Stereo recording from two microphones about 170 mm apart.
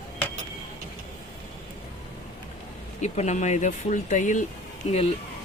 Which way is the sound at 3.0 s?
45° left (ahead or behind).